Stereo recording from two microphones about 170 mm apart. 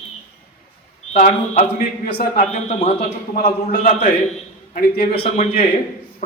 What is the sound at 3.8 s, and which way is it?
Speech, 45° left (ahead or behind).